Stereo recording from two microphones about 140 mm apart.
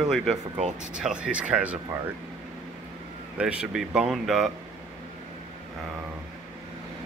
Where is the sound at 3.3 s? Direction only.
5° right (ahead or behind).